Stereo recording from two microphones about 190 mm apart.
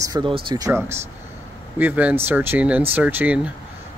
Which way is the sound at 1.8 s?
10° right (ahead or behind).